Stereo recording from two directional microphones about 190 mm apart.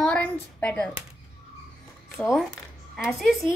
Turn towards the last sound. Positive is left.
turn(degrees=0)  # may be behind; listen again after turning